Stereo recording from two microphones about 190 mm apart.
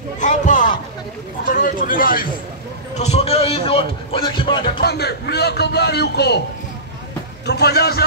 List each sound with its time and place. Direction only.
0.2 s a sound: 40° left (ahead or behind)
1.5 s speech: 45° left (ahead or behind)
3.0 s speech: 35° left (ahead or behind)
4.7 s speech: 60° left (ahead or behind)
7.4 s speech: 60° left (ahead or behind)